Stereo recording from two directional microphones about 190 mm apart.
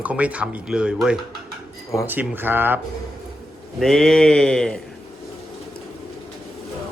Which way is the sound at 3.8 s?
Centre (ahead or behind).